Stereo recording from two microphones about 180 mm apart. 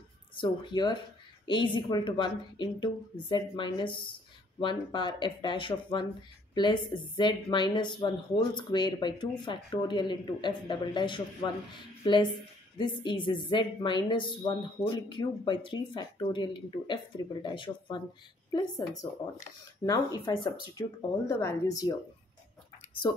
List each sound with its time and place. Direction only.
0.4 s speech: 25° left (ahead or behind)